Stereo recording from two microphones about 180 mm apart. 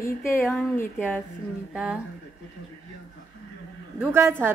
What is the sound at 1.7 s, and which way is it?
Speech, 5° right (ahead or behind).